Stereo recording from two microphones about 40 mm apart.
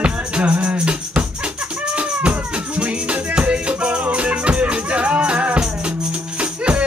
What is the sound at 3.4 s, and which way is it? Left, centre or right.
Music, right.